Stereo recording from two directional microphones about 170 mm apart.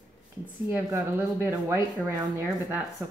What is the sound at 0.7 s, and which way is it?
A woman's voice, 10° right (ahead or behind).